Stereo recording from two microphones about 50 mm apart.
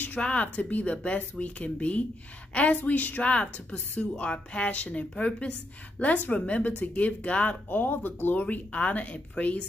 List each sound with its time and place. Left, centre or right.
0.2 s speech: left